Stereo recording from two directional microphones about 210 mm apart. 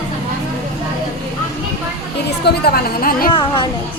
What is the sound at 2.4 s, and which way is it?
Speech, 50° left (ahead or behind).